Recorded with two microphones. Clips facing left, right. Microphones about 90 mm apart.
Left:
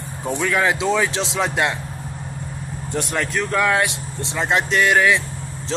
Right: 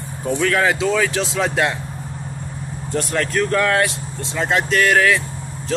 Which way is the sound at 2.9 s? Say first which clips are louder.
Right 2 dB; 15° left (ahead or behind).